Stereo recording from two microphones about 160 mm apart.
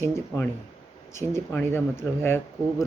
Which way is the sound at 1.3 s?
15° left (ahead or behind).